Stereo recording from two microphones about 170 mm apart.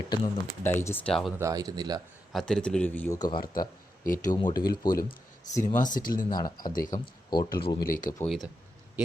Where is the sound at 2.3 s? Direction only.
Centre (ahead or behind).